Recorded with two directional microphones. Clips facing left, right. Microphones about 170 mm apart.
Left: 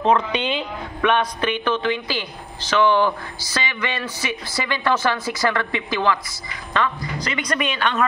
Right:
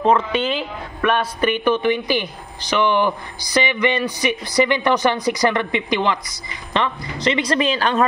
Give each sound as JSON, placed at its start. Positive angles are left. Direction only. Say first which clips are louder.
{"t": 0.0, "sound": "a man's voice", "louder": "right 2 dB", "side_deg": -5}